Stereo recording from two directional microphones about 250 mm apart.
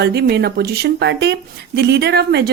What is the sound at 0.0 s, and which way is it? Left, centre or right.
Speech, right.